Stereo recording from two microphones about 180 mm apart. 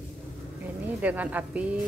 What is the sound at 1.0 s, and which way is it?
Speech, 10° right (ahead or behind).